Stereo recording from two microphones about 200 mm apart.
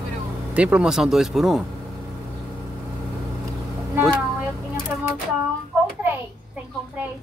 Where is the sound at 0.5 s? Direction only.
5° right (ahead or behind).